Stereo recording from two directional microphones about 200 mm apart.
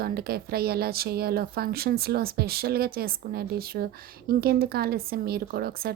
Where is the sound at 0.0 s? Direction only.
50° right (ahead or behind).